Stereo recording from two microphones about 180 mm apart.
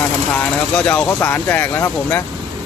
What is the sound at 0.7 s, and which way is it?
Speech, 5° left (ahead or behind).